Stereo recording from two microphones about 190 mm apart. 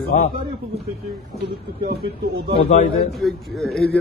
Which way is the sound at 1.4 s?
60° right (ahead or behind).